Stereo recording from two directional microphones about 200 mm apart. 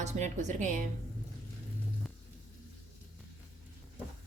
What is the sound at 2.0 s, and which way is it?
Music, centre (ahead or behind).